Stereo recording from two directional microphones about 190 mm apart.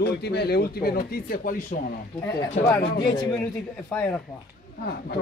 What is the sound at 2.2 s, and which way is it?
Speech, 15° left (ahead or behind).